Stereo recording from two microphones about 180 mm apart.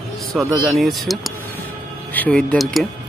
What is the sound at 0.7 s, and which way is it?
Speech, centre (ahead or behind).